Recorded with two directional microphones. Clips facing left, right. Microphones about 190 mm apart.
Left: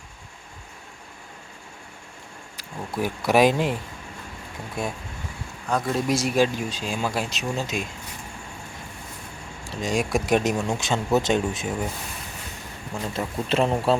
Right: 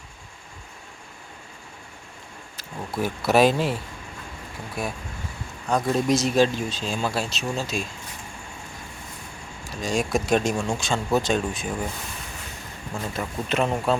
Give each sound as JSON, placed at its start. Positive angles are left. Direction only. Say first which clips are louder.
{"t": 2.6, "sound": "speech", "louder": "even", "side_deg": 15}
{"t": 4.8, "sound": "speech", "louder": "left 1 dB", "side_deg": 25}
{"t": 5.6, "sound": "speech", "louder": "right 2 dB", "side_deg": 0}
{"t": 9.6, "sound": "speech", "louder": "even", "side_deg": 20}
{"t": 13.1, "sound": "a man's voice", "louder": "left 2 dB", "side_deg": 30}